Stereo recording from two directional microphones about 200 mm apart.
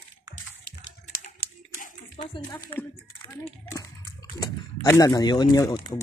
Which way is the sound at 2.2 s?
20° left (ahead or behind).